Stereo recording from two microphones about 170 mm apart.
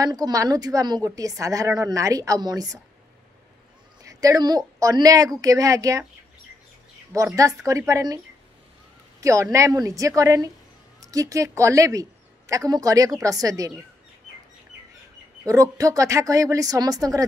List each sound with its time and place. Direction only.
0.0 s a woman's voice: 20° right (ahead or behind)
4.1 s a woman's voice: 20° right (ahead or behind)
7.1 s a woman's voice: 20° right (ahead or behind)
9.2 s a woman's voice: 20° right (ahead or behind)
15.4 s a woman's voice: 20° right (ahead or behind)